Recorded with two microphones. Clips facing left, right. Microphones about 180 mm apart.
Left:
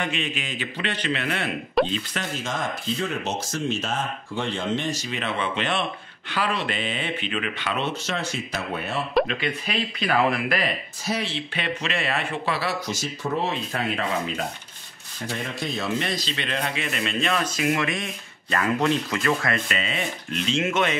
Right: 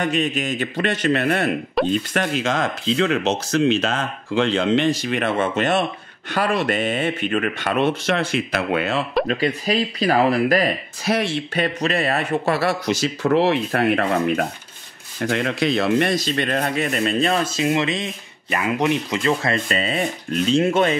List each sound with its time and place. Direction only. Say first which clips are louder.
0.0 s speech: right 7 dB; 40° right (ahead or behind)
1.8 s speech: right 1 dB; centre (ahead or behind)
2.3 s speech: right 7 dB; 85° right
9.3 s speech: right 7 dB; 40° right (ahead or behind)
11.1 s speech: right 7 dB; 50° right (ahead or behind)
12.8 s speech: right 9 dB; 75° right (ahead or behind)
15.1 s speech: right 9 dB; 75° right (ahead or behind); by 20.9 s 35° right (ahead or behind)